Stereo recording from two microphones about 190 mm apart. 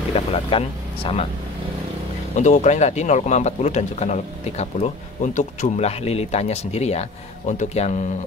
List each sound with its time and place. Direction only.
0.1 s speech: 30° left (ahead or behind)
2.3 s speech: 40° left (ahead or behind)